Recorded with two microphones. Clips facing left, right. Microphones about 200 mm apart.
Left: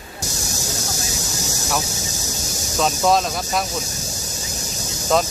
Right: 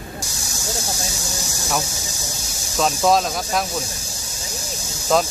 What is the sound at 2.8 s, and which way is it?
Speech, centre (ahead or behind).